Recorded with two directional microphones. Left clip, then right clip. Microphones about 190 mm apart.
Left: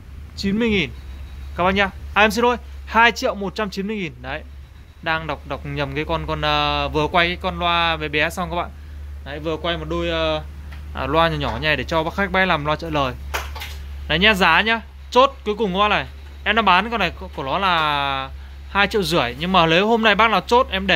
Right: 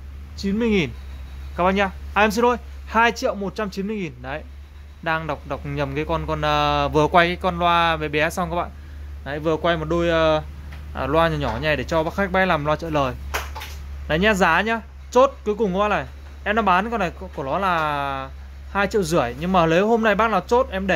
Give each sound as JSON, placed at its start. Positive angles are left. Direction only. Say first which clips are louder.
{"t": 0.4, "sound": "speech", "louder": "left 2 dB", "side_deg": 15}
{"t": 0.7, "sound": "a man's voice", "louder": "even", "side_deg": -10}
{"t": 1.6, "sound": "a man's voice", "louder": "left 1 dB", "side_deg": 0}
{"t": 9.2, "sound": "speech", "louder": "right 3 dB", "side_deg": -25}
{"t": 10.9, "sound": "speech", "louder": "left 1 dB", "side_deg": 0}